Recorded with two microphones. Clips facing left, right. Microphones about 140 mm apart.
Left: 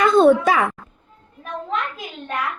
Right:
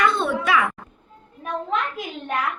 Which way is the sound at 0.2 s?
40° left (ahead or behind).